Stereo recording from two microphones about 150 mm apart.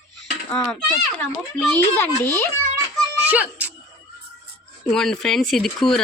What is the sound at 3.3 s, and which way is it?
Speech, 10° right (ahead or behind).